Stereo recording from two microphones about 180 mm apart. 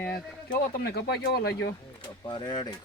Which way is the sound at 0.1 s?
60° left (ahead or behind).